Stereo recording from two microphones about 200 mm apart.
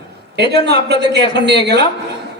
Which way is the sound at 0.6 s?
55° right (ahead or behind).